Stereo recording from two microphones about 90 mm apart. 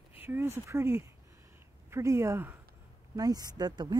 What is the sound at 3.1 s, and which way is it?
Speech, 45° right (ahead or behind).